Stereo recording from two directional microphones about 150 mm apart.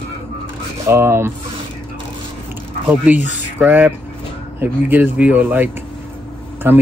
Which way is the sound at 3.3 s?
10° right (ahead or behind).